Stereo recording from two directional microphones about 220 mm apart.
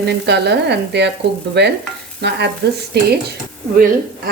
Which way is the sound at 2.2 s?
50° right (ahead or behind).